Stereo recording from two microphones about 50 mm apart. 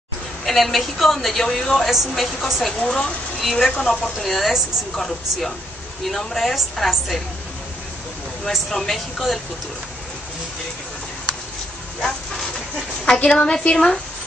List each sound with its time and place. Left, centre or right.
0.5 s a woman's voice: centre
2.8 s a woman's voice: centre
3.3 s a woman's voice: centre
8.5 s a woman's voice: centre
13.0 s a woman's voice: centre